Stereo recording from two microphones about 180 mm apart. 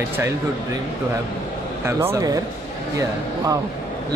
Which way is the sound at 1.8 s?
15° right (ahead or behind).